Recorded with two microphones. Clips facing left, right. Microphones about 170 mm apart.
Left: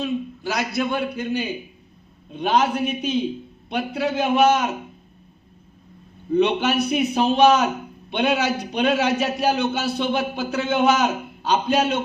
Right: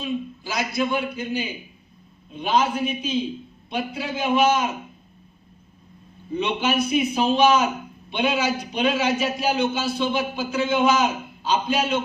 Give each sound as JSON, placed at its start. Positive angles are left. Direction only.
{"t": 0.0, "sound": "a man's voice", "side_deg": 65}
{"t": 6.3, "sound": "a man's voice", "side_deg": 65}